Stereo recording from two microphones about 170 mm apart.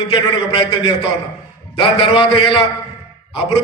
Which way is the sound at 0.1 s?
30° left (ahead or behind).